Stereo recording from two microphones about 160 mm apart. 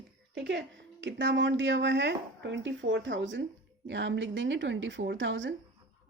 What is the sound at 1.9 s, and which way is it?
Speech, 90° right.